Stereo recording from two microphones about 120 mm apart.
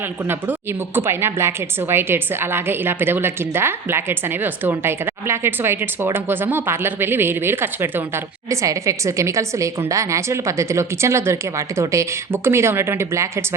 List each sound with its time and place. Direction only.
0.9 s a woman's voice: 20° right (ahead or behind)